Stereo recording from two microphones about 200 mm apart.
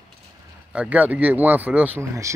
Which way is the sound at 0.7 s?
5° right (ahead or behind).